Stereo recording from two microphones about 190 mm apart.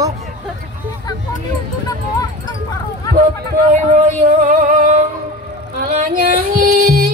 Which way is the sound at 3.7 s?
40° right (ahead or behind).